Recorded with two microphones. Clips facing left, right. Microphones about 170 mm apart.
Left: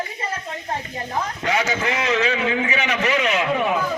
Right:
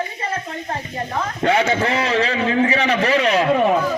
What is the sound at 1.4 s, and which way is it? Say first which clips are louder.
A man's voice: right 6 dB; 30° right (ahead or behind).